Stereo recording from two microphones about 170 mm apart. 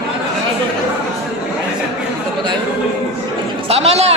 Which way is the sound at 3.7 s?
40° right (ahead or behind).